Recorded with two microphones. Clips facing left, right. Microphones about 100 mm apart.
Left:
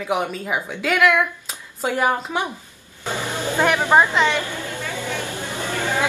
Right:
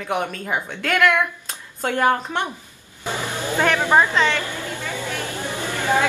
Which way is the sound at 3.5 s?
15° left (ahead or behind).